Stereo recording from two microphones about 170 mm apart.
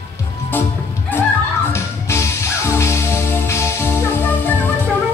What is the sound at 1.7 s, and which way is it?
Music, 15° left (ahead or behind).